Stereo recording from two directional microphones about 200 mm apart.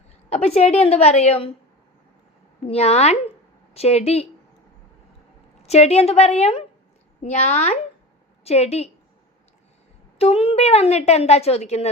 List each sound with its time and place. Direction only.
0.3 s a woman's voice: 30° left (ahead or behind)
2.6 s a woman's voice: 30° left (ahead or behind)
5.6 s a woman's voice: 30° left (ahead or behind)
10.2 s a woman's voice: 30° left (ahead or behind)